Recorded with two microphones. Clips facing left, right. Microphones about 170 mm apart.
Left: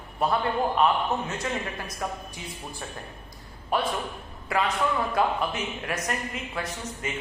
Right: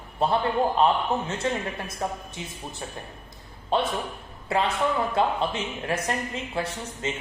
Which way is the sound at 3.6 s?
25° right (ahead or behind).